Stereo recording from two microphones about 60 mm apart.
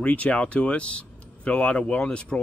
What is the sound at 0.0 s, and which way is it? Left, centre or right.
Speech, left.